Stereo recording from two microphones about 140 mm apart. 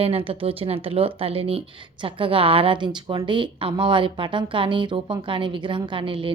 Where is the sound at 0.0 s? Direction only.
40° right (ahead or behind).